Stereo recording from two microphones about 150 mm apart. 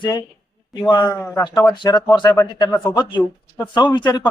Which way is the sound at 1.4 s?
30° left (ahead or behind).